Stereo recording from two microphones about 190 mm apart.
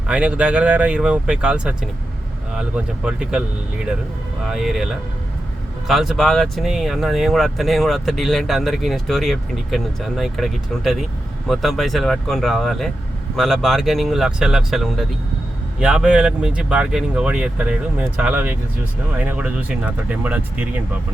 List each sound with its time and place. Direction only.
0.1 s speech: 5° right (ahead or behind)